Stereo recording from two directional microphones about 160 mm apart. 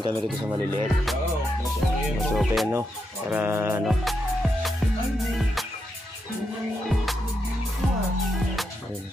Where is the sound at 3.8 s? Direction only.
Centre (ahead or behind).